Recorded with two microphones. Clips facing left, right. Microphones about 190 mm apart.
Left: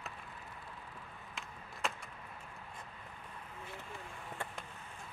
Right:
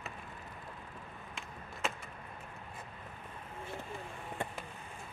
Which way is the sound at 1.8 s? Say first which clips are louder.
Right 2 dB; centre (ahead or behind).